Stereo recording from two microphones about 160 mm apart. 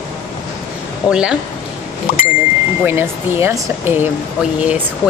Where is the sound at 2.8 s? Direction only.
15° right (ahead or behind).